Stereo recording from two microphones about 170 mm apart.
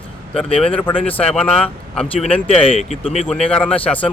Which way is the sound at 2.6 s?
35° left (ahead or behind).